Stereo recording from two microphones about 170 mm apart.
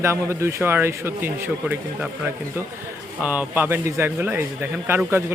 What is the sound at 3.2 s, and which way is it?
Speech, 10° right (ahead or behind).